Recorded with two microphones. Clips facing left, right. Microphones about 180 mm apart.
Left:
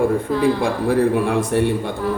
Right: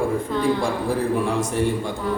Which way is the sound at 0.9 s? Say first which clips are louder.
Left 6 dB; 60° left (ahead or behind).